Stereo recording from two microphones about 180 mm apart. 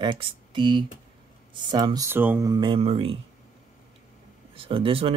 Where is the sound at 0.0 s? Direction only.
25° right (ahead or behind).